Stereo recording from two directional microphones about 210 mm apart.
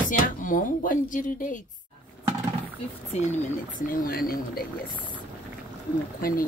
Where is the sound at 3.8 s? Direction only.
45° left (ahead or behind).